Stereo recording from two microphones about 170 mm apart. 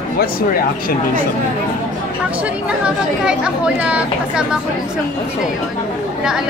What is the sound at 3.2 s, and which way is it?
Speech, 5° right (ahead or behind).